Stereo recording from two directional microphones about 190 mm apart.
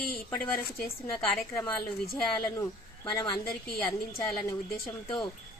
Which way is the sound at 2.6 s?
15° left (ahead or behind).